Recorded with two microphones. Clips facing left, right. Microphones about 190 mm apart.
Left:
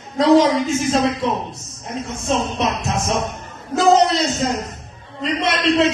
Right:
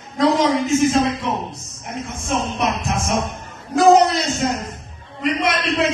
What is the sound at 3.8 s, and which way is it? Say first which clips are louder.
Music: right 2 dB; 25° left (ahead or behind).